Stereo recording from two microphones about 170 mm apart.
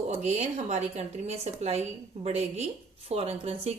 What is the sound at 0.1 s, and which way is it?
A woman's voice, 40° right (ahead or behind).